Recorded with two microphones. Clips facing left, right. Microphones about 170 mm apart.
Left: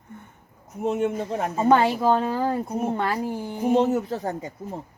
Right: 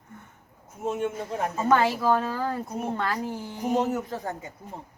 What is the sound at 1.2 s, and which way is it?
Speech, 30° left (ahead or behind).